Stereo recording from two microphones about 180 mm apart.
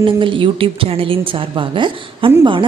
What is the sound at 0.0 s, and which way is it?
A woman's voice, 30° right (ahead or behind).